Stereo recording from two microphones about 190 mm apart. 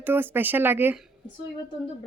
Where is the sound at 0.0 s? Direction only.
10° right (ahead or behind).